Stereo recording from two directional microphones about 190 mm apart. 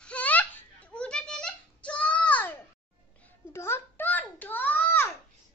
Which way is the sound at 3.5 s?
15° left (ahead or behind).